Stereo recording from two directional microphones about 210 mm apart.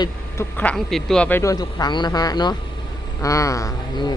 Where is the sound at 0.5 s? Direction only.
5° left (ahead or behind).